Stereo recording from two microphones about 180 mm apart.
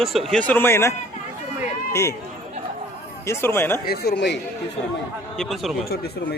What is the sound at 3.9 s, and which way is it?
Speech, 65° left (ahead or behind).